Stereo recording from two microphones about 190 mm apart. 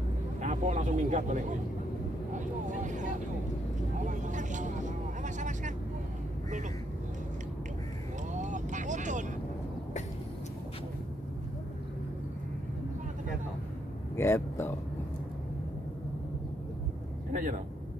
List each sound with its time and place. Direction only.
0.4 s speech: 40° right (ahead or behind)
8.3 s vehicle: 40° right (ahead or behind)
14.1 s speech: 15° left (ahead or behind)
17.3 s vehicle: 45° right (ahead or behind)